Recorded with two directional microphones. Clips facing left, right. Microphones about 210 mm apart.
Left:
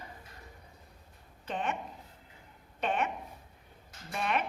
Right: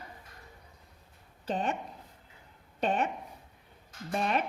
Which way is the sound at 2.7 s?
35° right (ahead or behind).